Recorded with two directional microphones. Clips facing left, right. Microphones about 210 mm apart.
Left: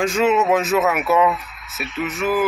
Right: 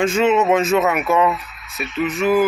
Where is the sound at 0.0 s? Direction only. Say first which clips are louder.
Right 2 dB; centre (ahead or behind).